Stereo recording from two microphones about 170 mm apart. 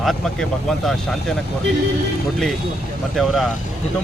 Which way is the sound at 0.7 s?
Centre (ahead or behind).